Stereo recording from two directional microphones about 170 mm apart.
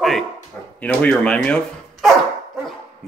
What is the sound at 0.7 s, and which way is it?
Speech, 10° left (ahead or behind).